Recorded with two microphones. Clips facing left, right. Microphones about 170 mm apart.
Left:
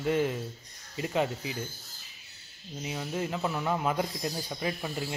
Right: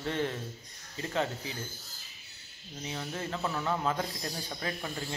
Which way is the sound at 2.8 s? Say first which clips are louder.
Left 4 dB; 15° left (ahead or behind).